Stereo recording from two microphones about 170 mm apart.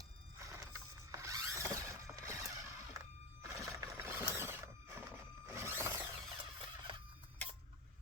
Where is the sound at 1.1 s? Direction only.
20° right (ahead or behind).